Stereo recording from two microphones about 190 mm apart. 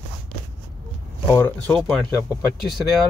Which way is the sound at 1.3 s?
10° left (ahead or behind).